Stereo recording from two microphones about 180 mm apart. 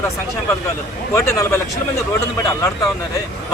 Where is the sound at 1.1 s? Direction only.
15° left (ahead or behind).